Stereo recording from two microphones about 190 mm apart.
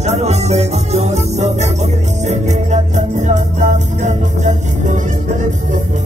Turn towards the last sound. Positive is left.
turn(degrees=-40)  # may be behind; listen again after turning